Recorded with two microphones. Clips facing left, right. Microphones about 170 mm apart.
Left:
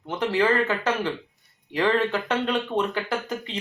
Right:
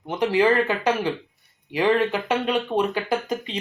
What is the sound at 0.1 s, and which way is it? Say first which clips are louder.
Speech: right 3 dB; 15° right (ahead or behind).